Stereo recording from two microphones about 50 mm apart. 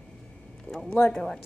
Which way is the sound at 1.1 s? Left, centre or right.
Centre.